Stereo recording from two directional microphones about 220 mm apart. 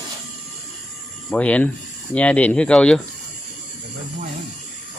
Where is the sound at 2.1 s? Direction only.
5° left (ahead or behind).